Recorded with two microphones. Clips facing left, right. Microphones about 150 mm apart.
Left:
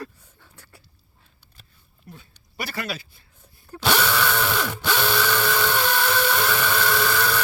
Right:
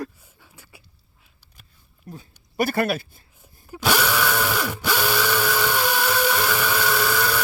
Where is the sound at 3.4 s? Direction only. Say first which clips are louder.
Right 1 dB; 10° right (ahead or behind).